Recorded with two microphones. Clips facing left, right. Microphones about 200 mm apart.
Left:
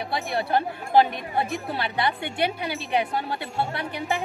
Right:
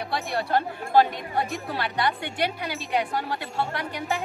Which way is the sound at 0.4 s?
20° left (ahead or behind).